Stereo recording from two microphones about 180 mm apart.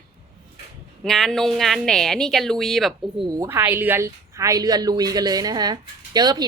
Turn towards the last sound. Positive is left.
turn(degrees=-25)  # may be behind; listen again after turning